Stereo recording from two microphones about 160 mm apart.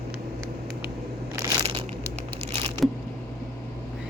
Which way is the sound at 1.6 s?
35° right (ahead or behind).